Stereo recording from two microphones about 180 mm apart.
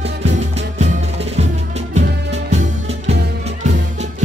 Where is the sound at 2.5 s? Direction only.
35° right (ahead or behind).